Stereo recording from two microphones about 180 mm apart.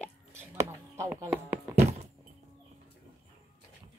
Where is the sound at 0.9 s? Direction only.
15° right (ahead or behind).